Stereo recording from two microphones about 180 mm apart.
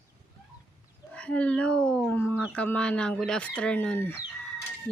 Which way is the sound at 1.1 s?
5° left (ahead or behind).